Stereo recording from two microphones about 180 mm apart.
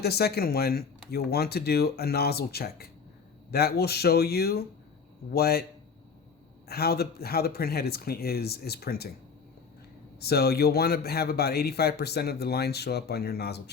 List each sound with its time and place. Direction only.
0.0 s a man's voice: 60° left (ahead or behind)
6.7 s a man's voice: 60° left (ahead or behind)
10.2 s a man's voice: 60° left (ahead or behind)